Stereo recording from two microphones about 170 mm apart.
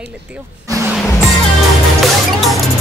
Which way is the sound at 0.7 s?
15° right (ahead or behind).